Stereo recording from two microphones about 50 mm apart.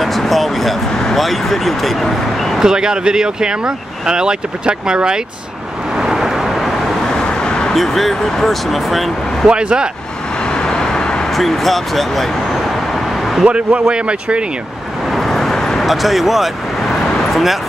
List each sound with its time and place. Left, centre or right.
0.0 s a sound: centre
1.0 s speech: centre
2.6 s speech: centre
5.9 s vehicle: centre
7.1 s vehicle: centre
7.7 s speech: centre
9.5 s speech: centre
10.4 s vehicle: centre
11.2 s vehicle: centre
13.7 s speech: right
15.0 s vehicle: centre